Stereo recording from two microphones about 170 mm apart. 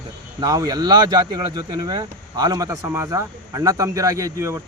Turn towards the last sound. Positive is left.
turn(degrees=-20)  # may be behind; listen again after turning